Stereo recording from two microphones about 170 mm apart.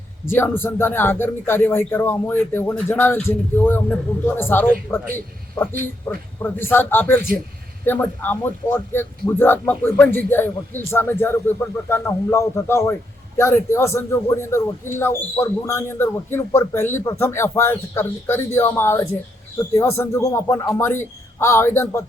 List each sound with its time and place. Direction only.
0.3 s a man's voice: 15° left (ahead or behind)